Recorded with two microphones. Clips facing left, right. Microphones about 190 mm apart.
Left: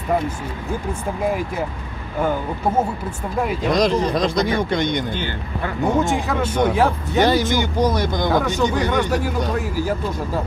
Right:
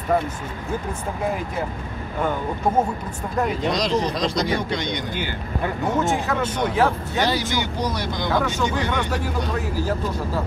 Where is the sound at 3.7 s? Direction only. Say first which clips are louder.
Left 4 dB; 55° left (ahead or behind).